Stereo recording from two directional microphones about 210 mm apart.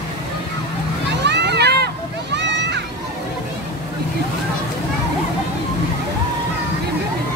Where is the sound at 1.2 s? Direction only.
55° right (ahead or behind).